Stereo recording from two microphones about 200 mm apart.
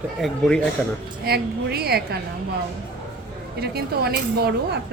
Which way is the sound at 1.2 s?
50° right (ahead or behind).